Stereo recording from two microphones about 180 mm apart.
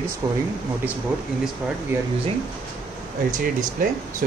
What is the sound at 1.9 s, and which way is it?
Speech, 10° right (ahead or behind).